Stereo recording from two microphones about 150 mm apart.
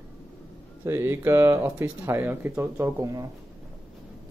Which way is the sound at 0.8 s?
15° right (ahead or behind).